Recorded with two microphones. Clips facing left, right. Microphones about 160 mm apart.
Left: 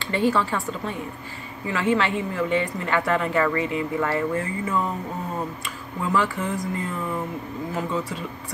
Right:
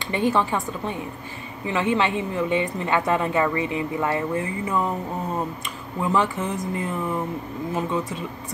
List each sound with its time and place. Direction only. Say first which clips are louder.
0.1 s a woman's voice: even; 20° right (ahead or behind)
5.9 s a woman's voice: right 1 dB; 20° right (ahead or behind)